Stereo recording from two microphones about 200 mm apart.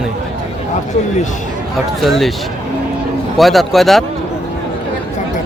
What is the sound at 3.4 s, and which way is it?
Speech, centre (ahead or behind).